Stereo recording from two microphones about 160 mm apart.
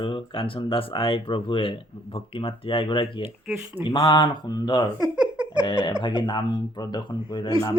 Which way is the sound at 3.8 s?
30° left (ahead or behind).